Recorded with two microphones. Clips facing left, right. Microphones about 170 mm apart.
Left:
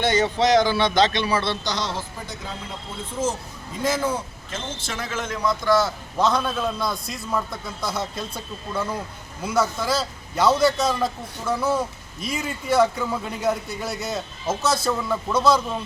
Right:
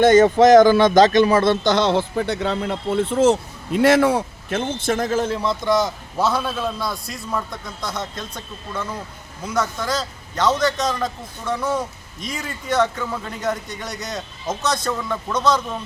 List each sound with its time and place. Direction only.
0.0 s speech: 45° right (ahead or behind); by 5.9 s 20° right (ahead or behind)
6.1 s a man's voice: 5° right (ahead or behind)